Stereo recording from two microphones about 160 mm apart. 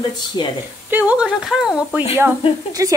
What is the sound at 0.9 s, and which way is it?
Speech, 10° right (ahead or behind).